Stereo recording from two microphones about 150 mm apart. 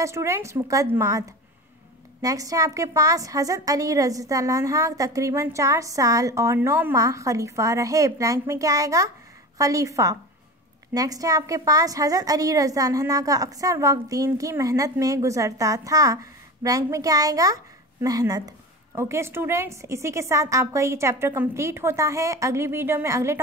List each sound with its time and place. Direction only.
0.0 s a woman's voice: 20° right (ahead or behind)
2.2 s a woman's voice: 25° right (ahead or behind)